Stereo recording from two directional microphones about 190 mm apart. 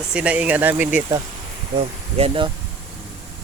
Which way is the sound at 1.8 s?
30° right (ahead or behind).